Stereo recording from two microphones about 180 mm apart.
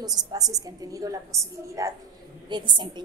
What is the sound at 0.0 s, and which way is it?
A woman's voice, 20° right (ahead or behind).